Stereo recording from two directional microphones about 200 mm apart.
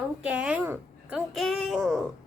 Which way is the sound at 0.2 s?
5° right (ahead or behind).